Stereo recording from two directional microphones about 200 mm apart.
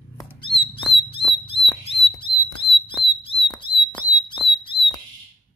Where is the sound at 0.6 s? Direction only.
25° left (ahead or behind).